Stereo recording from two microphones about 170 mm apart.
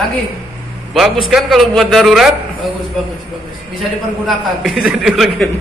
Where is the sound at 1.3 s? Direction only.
Centre (ahead or behind).